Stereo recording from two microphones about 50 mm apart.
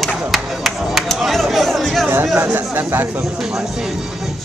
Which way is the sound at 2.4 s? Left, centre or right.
Right.